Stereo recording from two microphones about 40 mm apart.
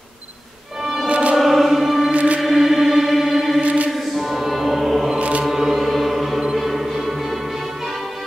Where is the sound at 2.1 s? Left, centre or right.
Right.